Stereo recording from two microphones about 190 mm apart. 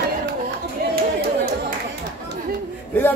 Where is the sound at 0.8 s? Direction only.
55° right (ahead or behind).